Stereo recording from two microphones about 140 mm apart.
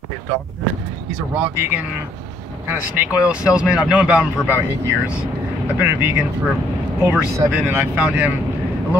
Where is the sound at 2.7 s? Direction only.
10° right (ahead or behind).